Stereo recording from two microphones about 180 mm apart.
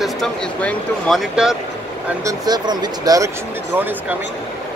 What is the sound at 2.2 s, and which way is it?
Speech, 20° right (ahead or behind).